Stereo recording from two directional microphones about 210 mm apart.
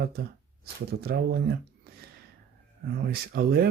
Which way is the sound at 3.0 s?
50° right (ahead or behind).